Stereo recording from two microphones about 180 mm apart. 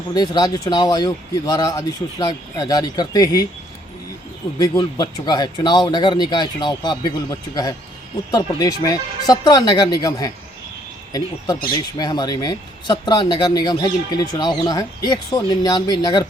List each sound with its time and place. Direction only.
0.1 s speech: 25° left (ahead or behind)
4.5 s speech: 25° left (ahead or behind)
11.9 s speech: 20° left (ahead or behind)